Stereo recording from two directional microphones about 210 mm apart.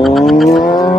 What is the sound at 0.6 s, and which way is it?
Vehicle, 20° left (ahead or behind).